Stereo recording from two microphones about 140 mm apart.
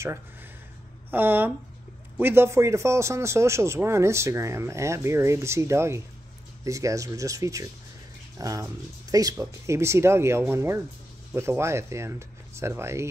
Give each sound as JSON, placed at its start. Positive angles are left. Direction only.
{"t": 1.1, "sound": "a man's voice", "side_deg": -15}